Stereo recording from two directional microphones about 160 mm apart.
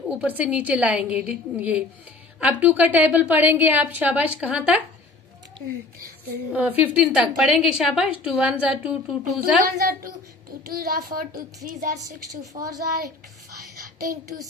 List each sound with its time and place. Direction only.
0.1 s a woman's voice: 10° right (ahead or behind)
5.9 s speech: 70° right (ahead or behind)
6.5 s a woman's voice: 10° right (ahead or behind)
9.4 s a child's voice: 65° right (ahead or behind)